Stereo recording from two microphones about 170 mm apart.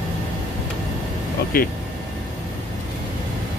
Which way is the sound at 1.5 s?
60° left (ahead or behind).